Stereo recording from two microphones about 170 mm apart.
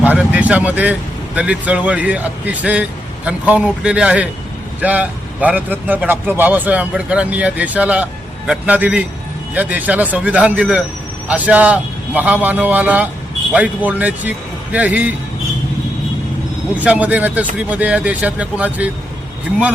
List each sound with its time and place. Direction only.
0.0 s a sound: 10° right (ahead or behind)
1.4 s a man's voice: 10° right (ahead or behind)
16.7 s a man's voice: 10° right (ahead or behind)